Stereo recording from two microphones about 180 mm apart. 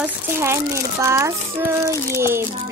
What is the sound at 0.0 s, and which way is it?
A child's voice, 15° right (ahead or behind).